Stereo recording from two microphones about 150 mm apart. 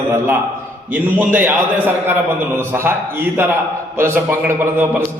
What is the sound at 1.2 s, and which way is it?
A man's voice, 15° right (ahead or behind).